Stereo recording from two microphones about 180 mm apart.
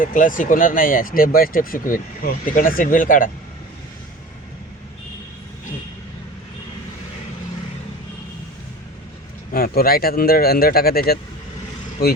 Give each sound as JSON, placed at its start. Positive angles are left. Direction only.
{"t": 0.0, "sound": "speech", "side_deg": 45}
{"t": 9.5, "sound": "speech", "side_deg": 55}